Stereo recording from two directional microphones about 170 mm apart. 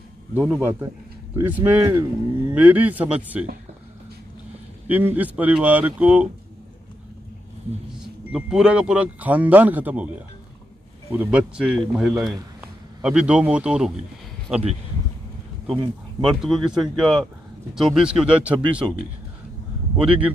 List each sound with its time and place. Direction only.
0.3 s speech: 5° right (ahead or behind)
4.8 s speech: 10° right (ahead or behind)
8.0 s speech: 5° right (ahead or behind)
11.2 s a man's voice: 5° right (ahead or behind)
15.7 s speech: 30° right (ahead or behind)
16.4 s a man's voice: centre (ahead or behind)
20.1 s speech: 10° right (ahead or behind)